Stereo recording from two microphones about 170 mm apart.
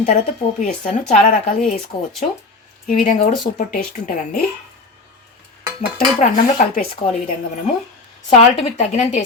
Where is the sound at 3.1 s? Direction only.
45° left (ahead or behind).